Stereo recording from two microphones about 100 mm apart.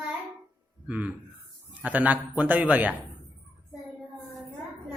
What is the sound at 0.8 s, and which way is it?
A man's voice, 15° right (ahead or behind).